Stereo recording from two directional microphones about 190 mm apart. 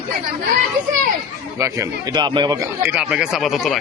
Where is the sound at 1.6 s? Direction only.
20° right (ahead or behind).